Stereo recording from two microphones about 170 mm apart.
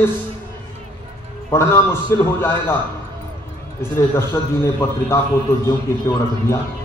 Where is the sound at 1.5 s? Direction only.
15° left (ahead or behind).